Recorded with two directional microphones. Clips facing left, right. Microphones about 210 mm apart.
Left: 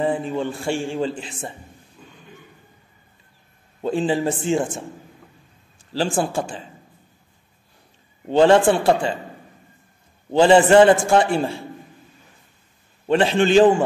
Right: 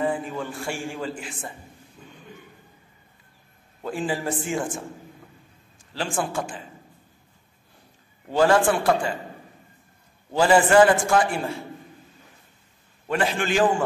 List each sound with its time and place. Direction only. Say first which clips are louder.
0.0 s a man's voice: left 4 dB; 25° left (ahead or behind)
3.8 s a man's voice: left 7 dB; 25° left (ahead or behind)
5.9 s a man's voice: left 5 dB; 30° left (ahead or behind)
8.3 s a man's voice: left 5 dB; 25° left (ahead or behind)
10.3 s a man's voice: left 5 dB; 25° left (ahead or behind)
13.0 s a man's voice: left 7 dB; 25° left (ahead or behind)